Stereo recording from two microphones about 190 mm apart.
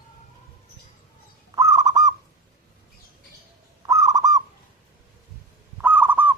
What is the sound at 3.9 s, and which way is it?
Bird, 20° right (ahead or behind).